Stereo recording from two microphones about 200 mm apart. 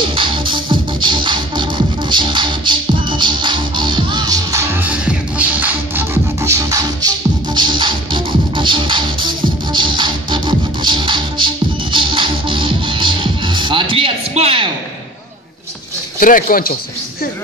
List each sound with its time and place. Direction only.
0.1 s music: 25° right (ahead or behind)
16.2 s speech: 45° left (ahead or behind)